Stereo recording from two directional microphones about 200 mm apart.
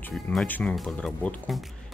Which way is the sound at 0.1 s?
Centre (ahead or behind).